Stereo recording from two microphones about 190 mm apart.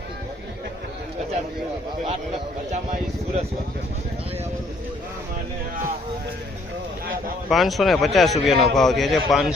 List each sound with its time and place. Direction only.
7.5 s a man's voice: centre (ahead or behind)